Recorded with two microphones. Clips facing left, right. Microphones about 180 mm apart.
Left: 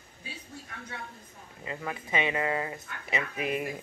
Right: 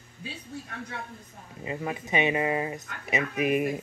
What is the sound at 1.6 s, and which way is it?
Speech, 25° right (ahead or behind).